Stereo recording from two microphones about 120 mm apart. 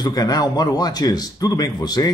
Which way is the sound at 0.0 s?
35° left (ahead or behind).